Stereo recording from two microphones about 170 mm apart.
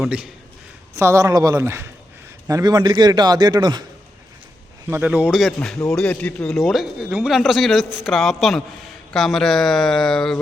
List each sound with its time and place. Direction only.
0.0 s a man's voice: 5° right (ahead or behind)
0.9 s a man's voice: 15° right (ahead or behind)
4.9 s a man's voice: 10° right (ahead or behind)